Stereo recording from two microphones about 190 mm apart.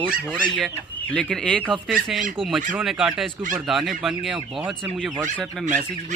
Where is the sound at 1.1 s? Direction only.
5° left (ahead or behind).